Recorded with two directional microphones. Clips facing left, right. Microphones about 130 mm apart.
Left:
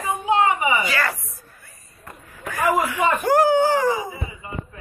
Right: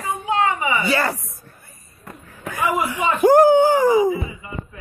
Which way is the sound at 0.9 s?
30° right (ahead or behind).